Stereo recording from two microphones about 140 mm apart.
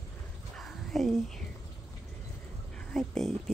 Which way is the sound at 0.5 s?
Centre (ahead or behind).